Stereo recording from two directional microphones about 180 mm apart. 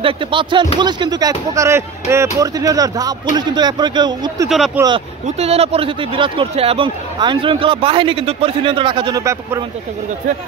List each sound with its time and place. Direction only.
0.0 s speech: 25° right (ahead or behind)
4.8 s speech: 10° right (ahead or behind)
5.2 s speech: 35° right (ahead or behind); by 9.6 s 15° right (ahead or behind)